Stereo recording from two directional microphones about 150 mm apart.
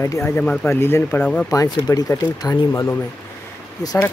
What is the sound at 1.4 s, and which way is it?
Speech, 25° left (ahead or behind).